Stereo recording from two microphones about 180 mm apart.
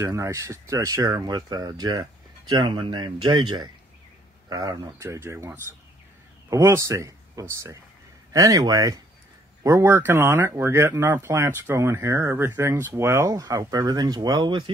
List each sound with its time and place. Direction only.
0.0 s speech: 15° right (ahead or behind)